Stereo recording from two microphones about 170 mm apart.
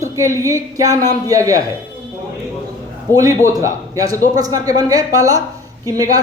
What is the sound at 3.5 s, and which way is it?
A woman's voice, 20° right (ahead or behind).